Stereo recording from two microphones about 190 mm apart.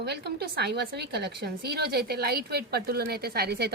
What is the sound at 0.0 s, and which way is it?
A woman's voice, 60° right (ahead or behind).